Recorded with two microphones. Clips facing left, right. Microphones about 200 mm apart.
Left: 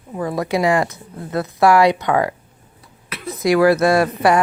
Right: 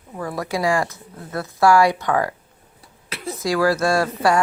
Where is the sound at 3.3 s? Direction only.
20° left (ahead or behind).